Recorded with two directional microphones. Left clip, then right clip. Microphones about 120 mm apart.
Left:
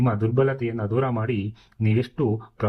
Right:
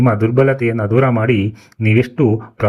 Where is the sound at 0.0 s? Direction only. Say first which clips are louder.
Right 9 dB; 25° right (ahead or behind).